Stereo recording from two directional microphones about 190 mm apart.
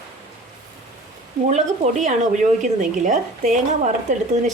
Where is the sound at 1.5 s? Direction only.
40° right (ahead or behind).